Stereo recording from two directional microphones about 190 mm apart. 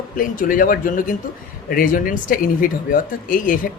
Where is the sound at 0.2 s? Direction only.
45° left (ahead or behind).